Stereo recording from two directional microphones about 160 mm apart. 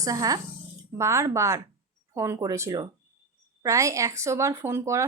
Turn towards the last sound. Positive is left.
turn(degrees=-15)  # may be behind; listen again after turning